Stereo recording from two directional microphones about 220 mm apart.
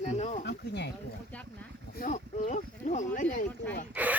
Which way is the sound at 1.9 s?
35° left (ahead or behind).